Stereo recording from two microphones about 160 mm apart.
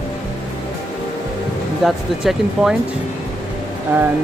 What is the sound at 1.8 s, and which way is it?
Speech, centre (ahead or behind).